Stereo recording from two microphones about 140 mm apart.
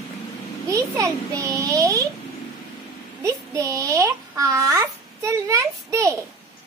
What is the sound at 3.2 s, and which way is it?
A woman's voice, 20° right (ahead or behind).